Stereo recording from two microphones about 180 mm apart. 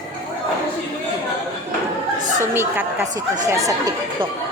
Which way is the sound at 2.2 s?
15° right (ahead or behind).